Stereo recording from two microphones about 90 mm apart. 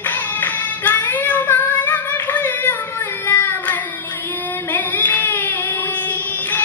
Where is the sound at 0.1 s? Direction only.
20° left (ahead or behind).